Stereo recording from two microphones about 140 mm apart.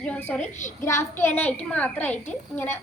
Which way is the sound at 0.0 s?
10° left (ahead or behind).